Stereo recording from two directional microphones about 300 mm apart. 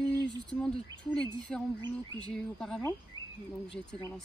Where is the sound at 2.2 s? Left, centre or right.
Centre.